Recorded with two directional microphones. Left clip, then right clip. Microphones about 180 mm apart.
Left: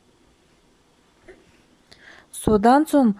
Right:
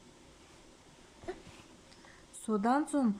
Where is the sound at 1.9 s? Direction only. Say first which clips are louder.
Left 16 dB; 45° left (ahead or behind).